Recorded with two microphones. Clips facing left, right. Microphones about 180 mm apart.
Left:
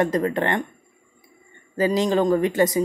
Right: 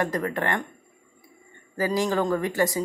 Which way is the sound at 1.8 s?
20° left (ahead or behind).